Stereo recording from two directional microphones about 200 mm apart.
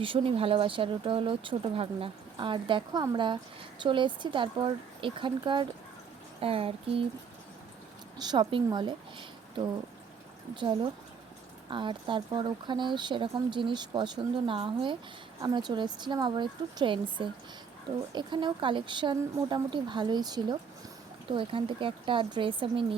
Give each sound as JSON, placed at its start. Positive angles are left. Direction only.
{"t": 0.0, "sound": "speech", "side_deg": -25}
{"t": 8.2, "sound": "speech", "side_deg": -20}
{"t": 10.5, "sound": "speech", "side_deg": -25}